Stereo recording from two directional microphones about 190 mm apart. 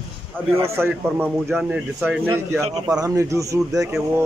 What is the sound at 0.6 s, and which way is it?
Speech, 15° right (ahead or behind).